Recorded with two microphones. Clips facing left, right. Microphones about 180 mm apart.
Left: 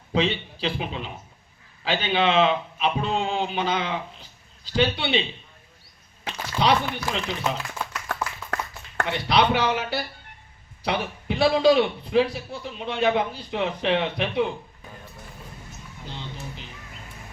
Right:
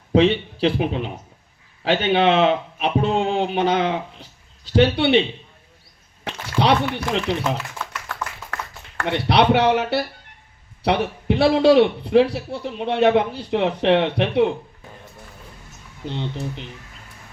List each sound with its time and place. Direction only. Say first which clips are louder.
0.1 s a man's voice: right 8 dB; 60° right (ahead or behind)
6.2 s speech: right 3 dB; 65° right (ahead or behind)
9.0 s a man's voice: right 5 dB; 65° right (ahead or behind)
16.0 s a man's voice: right 10 dB; 65° right (ahead or behind)